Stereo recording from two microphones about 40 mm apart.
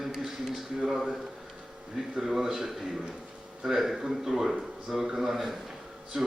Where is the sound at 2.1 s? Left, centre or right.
Centre.